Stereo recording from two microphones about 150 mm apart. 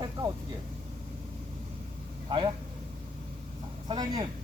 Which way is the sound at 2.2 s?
30° right (ahead or behind).